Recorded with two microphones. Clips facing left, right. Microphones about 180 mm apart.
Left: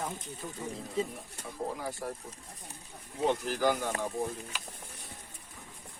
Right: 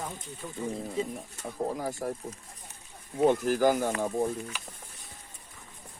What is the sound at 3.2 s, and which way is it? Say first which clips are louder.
Speech: right 5 dB; 50° right (ahead or behind).